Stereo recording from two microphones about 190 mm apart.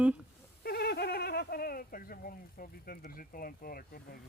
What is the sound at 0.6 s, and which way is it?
Turkey, 55° left (ahead or behind).